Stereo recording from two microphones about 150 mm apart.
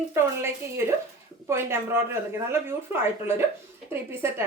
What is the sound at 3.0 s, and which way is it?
Speech, 15° right (ahead or behind).